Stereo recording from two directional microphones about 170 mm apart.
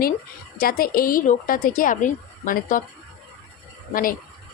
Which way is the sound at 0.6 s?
60° left (ahead or behind).